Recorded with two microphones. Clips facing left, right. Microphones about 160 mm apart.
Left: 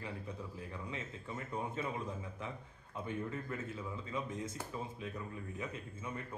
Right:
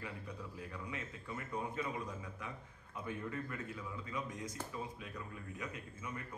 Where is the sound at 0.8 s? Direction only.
25° left (ahead or behind).